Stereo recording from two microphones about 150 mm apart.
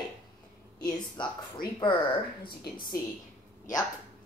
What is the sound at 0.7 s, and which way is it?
Speech, 25° left (ahead or behind).